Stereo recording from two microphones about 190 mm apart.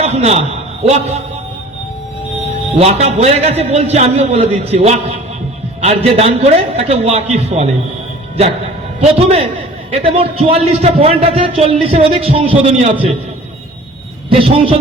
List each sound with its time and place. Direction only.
0.0 s a man's voice: 35° right (ahead or behind)
2.7 s a man's voice: 35° right (ahead or behind)
9.0 s a man's voice: 30° right (ahead or behind)
14.3 s a man's voice: 30° right (ahead or behind)